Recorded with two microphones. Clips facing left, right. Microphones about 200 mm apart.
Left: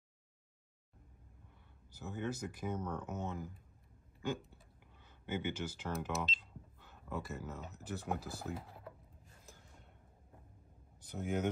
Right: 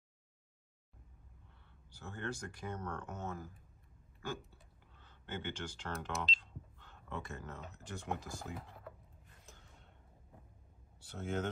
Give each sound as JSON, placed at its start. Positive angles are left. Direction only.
{"t": 2.0, "sound": "speech", "side_deg": 5}
{"t": 3.3, "sound": "speech", "side_deg": 20}
{"t": 11.1, "sound": "speech", "side_deg": 15}